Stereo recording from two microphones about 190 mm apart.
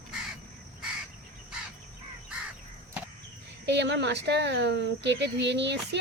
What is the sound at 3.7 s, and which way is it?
Speech, 65° right (ahead or behind).